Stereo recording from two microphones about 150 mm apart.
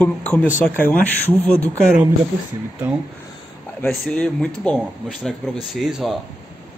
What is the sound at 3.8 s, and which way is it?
Speech, 5° left (ahead or behind).